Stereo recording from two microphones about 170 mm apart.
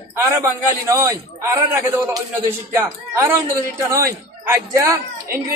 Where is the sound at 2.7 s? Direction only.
15° right (ahead or behind).